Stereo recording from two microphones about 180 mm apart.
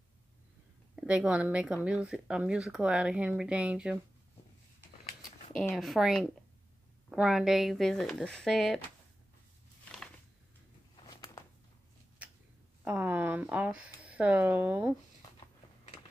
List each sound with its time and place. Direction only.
0.9 s speech: 5° right (ahead or behind)
5.6 s speech: centre (ahead or behind)
11.1 s a sound: 20° left (ahead or behind)
12.8 s speech: 10° right (ahead or behind)